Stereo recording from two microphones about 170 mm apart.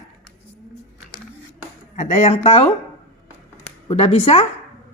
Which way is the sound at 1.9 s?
50° left (ahead or behind).